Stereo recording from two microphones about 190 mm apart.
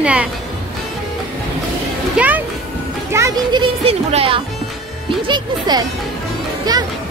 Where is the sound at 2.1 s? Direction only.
10° right (ahead or behind).